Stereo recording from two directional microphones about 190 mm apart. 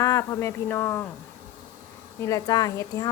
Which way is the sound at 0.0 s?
15° left (ahead or behind).